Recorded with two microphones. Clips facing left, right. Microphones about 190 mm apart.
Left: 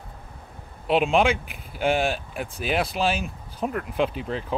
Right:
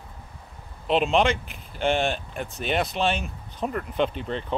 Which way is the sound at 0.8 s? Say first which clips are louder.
Left 1 dB; 5° left (ahead or behind).